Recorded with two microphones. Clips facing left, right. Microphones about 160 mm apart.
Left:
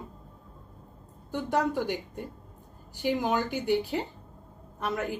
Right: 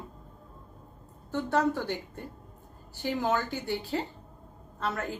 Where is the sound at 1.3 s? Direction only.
15° left (ahead or behind).